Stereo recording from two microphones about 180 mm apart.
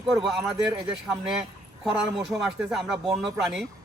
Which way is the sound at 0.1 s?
5° right (ahead or behind).